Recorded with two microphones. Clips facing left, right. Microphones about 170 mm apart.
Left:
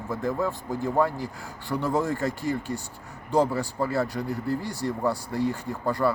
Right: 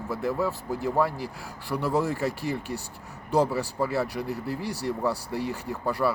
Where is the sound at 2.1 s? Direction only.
75° right (ahead or behind).